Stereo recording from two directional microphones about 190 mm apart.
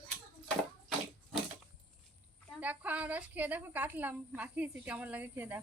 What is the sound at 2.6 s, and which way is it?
A woman's voice, 10° right (ahead or behind).